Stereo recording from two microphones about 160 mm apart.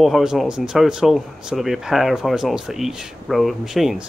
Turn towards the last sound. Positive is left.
turn(degrees=0)  # may be behind; listen again after turning